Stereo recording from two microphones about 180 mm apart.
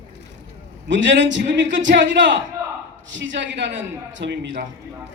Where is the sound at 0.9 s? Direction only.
85° right.